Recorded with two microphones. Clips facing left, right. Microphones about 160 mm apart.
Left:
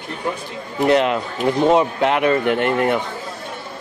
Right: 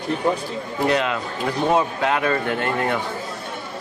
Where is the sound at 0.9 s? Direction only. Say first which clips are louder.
Left 6 dB; 25° left (ahead or behind).